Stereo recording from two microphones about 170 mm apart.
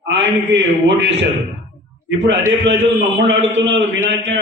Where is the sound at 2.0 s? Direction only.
90° right.